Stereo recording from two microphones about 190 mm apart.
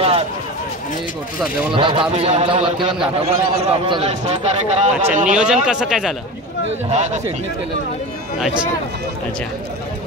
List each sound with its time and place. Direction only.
1.7 s a man's voice: 25° right (ahead or behind)
5.3 s speech: 5° right (ahead or behind)
6.9 s a man's voice: 40° right (ahead or behind)